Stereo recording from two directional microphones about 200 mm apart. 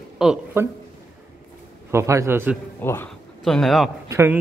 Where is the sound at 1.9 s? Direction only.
15° right (ahead or behind).